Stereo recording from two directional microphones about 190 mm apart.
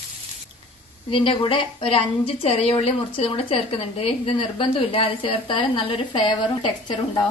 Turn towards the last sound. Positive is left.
turn(degrees=25)  # may be behind; listen again after turning